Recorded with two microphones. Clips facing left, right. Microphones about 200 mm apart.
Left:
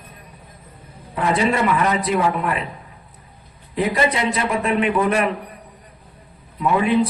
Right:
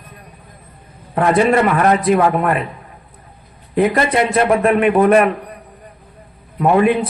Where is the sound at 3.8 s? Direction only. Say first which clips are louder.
Right 5 dB; 55° right (ahead or behind).